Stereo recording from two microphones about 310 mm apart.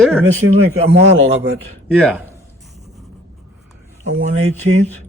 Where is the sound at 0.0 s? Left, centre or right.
Centre.